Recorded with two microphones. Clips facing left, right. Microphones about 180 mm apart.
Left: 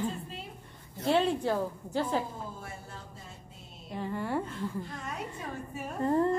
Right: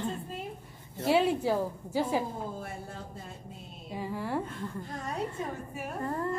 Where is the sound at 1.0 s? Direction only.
5° right (ahead or behind).